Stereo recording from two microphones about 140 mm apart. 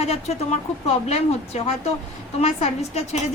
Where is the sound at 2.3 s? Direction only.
50° left (ahead or behind).